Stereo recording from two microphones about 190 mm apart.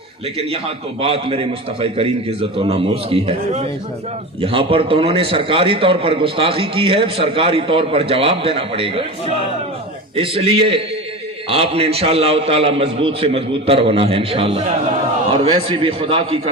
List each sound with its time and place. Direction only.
1.0 s a man's voice: 30° right (ahead or behind)
10.2 s a man's voice: 30° right (ahead or behind)